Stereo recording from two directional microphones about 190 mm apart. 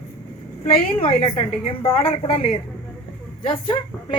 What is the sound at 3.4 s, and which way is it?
Speech, 30° left (ahead or behind).